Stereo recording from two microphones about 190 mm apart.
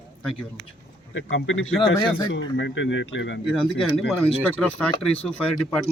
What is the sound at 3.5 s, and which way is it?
A man's voice, 5° left (ahead or behind).